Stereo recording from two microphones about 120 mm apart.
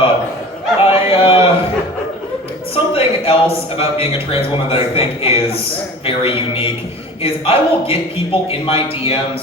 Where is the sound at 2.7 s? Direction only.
50° left (ahead or behind).